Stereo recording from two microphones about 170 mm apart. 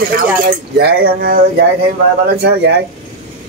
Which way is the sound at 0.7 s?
65° right (ahead or behind).